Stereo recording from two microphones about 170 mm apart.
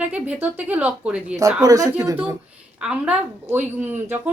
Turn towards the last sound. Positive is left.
turn(degrees=-10)  # may be behind; listen again after turning